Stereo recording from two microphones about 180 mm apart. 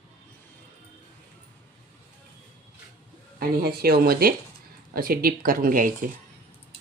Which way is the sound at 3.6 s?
60° right (ahead or behind).